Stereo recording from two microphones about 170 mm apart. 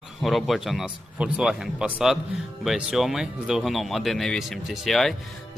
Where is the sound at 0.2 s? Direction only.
Centre (ahead or behind).